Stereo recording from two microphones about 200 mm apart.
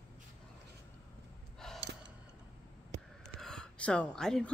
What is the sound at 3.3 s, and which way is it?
Gasp, 5° left (ahead or behind).